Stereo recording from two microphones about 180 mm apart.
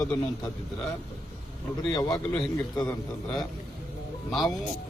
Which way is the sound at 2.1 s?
Centre (ahead or behind).